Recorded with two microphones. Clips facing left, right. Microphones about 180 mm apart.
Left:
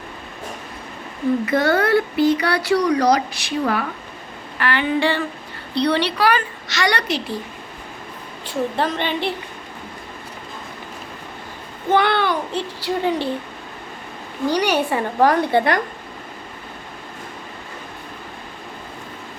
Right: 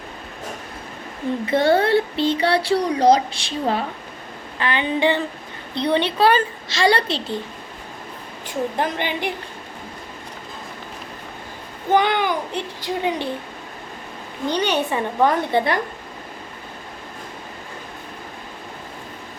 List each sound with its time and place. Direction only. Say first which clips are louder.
1.5 s speech: right 3 dB; 25° right (ahead or behind)
8.4 s a child's voice: left 1 dB; 15° right (ahead or behind)
11.9 s a child's voice: left 1 dB; 15° right (ahead or behind)
14.4 s speech: left 2 dB; 20° right (ahead or behind)